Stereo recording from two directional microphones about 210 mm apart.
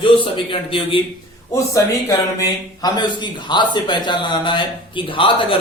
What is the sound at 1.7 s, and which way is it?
Speech, 15° left (ahead or behind).